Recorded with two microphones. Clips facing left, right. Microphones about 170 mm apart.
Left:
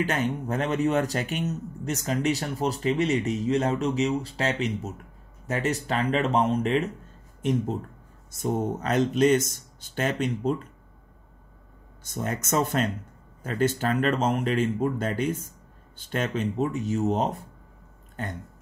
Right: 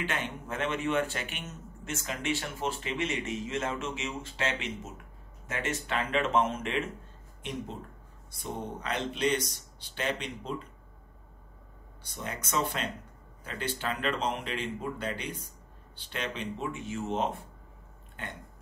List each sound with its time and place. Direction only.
0.0 s speech: 40° left (ahead or behind)
12.0 s speech: 45° left (ahead or behind)